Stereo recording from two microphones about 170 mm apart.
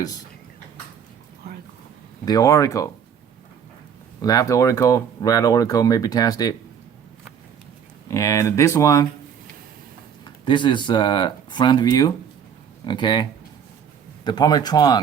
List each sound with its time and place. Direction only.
2.2 s speech: 20° left (ahead or behind)
4.2 s speech: 20° left (ahead or behind)
8.0 s speech: 20° left (ahead or behind)
10.2 s speech: 25° left (ahead or behind)
14.3 s speech: 25° left (ahead or behind)